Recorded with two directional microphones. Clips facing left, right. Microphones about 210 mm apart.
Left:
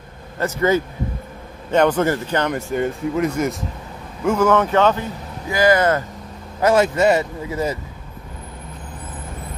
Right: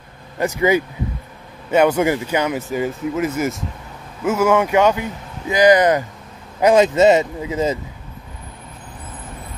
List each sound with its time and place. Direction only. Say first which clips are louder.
0.4 s speech: right 1 dB; 15° right (ahead or behind)